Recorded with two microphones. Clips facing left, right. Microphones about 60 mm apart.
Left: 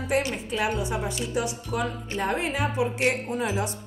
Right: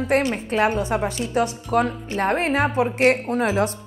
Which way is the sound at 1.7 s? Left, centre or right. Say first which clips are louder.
Right 8 dB; right.